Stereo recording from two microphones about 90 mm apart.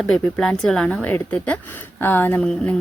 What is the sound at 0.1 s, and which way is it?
Speech, 5° left (ahead or behind).